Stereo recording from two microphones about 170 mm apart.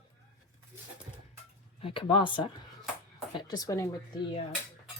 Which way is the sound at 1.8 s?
30° left (ahead or behind).